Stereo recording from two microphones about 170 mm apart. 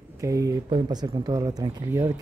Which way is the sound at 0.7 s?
30° right (ahead or behind).